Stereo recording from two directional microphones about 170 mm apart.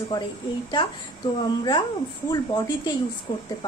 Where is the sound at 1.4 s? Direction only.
25° left (ahead or behind).